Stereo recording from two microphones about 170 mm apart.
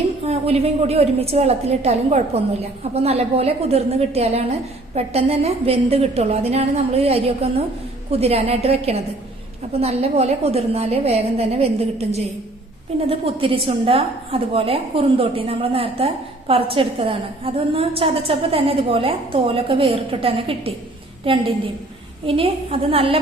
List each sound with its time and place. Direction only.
0.3 s a woman's voice: 35° right (ahead or behind)